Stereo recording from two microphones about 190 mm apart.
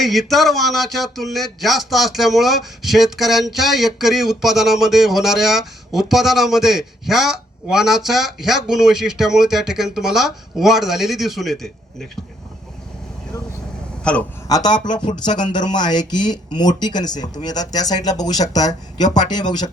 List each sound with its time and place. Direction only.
0.0 s a sound: centre (ahead or behind)
14.0 s speech: 5° left (ahead or behind)
14.4 s speech: 20° left (ahead or behind)